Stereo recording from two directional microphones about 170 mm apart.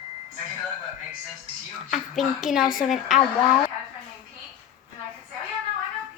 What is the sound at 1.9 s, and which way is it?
A woman's voice, centre (ahead or behind).